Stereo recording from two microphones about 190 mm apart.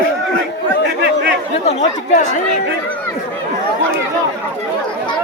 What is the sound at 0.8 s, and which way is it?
Chatter, 60° right (ahead or behind).